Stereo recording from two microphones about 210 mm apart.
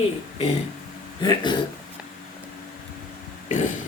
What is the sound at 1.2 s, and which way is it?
Speech, 20° left (ahead or behind).